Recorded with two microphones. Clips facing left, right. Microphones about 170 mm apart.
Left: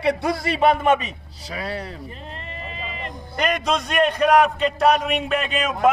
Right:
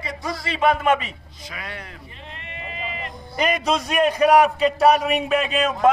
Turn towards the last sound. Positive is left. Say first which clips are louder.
# right 2 dB
turn(degrees=0)  # may be behind; listen again after turning